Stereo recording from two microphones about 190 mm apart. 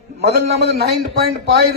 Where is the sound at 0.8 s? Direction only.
55° right (ahead or behind).